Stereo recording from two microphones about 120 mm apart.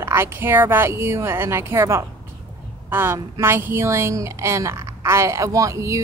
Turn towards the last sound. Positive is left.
turn(degrees=-25)  # may be behind; listen again after turning